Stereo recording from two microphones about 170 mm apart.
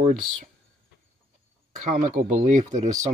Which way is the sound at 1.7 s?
50° right (ahead or behind).